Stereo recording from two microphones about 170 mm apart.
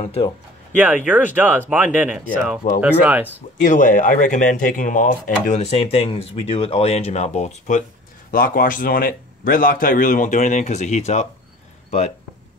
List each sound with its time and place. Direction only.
0.7 s speech: 10° right (ahead or behind)
3.5 s speech: 50° left (ahead or behind)
8.3 s speech: 55° left (ahead or behind)